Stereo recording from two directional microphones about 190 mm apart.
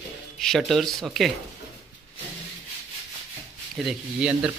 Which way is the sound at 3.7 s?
5° right (ahead or behind).